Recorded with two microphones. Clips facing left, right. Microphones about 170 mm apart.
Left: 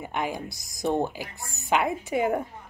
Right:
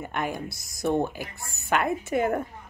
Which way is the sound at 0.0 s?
15° left (ahead or behind).